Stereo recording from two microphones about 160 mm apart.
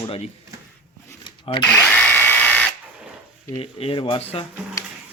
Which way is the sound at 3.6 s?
35° left (ahead or behind).